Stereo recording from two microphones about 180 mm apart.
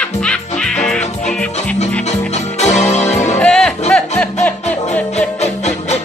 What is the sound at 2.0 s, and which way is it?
Music, 40° left (ahead or behind).